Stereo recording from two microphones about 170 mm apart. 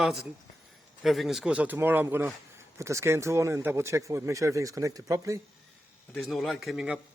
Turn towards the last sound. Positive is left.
turn(degrees=-5)  # may be behind; listen again after turning